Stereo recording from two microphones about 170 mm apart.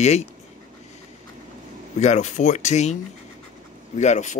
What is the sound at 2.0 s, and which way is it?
Speech, 45° left (ahead or behind).